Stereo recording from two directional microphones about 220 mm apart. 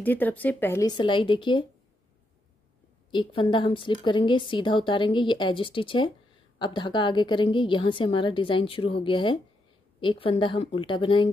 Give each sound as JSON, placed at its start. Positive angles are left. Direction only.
{"t": 0.0, "sound": "a woman's voice", "side_deg": 10}
{"t": 3.1, "sound": "a woman's voice", "side_deg": 20}